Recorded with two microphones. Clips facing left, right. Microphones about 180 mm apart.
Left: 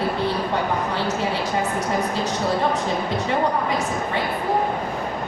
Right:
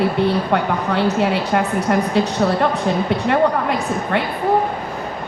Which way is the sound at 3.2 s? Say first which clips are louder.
Right 6 dB; 65° right (ahead or behind).